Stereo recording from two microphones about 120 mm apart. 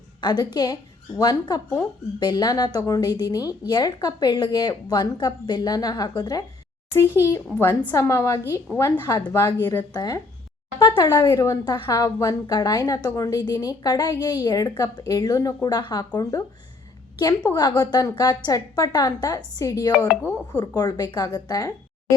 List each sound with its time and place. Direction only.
0.2 s a woman's voice: 35° left (ahead or behind)
6.9 s a child's voice: 20° left (ahead or behind)